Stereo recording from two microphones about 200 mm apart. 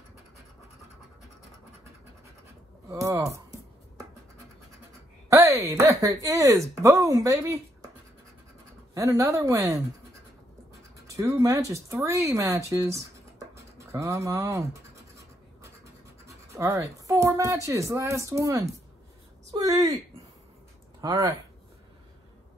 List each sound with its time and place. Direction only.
2.9 s a woman's voice: 15° right (ahead or behind)
5.3 s a woman's voice: 10° right (ahead or behind)
8.9 s a woman's voice: 15° right (ahead or behind)
13.6 s scratch: 15° right (ahead or behind)
16.3 s a woman's voice: 15° right (ahead or behind)
21.0 s speech: 20° right (ahead or behind)